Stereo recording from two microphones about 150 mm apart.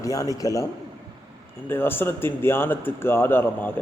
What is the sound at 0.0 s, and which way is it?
A man's voice, 20° left (ahead or behind).